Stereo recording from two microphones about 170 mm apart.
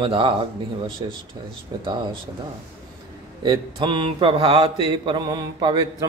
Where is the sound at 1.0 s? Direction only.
30° right (ahead or behind).